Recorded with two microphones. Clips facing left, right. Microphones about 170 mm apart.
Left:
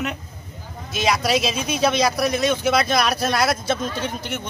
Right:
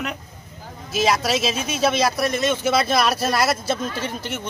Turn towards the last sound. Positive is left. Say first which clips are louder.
# left 1 dB
turn(degrees=-5)  # may be behind; listen again after turning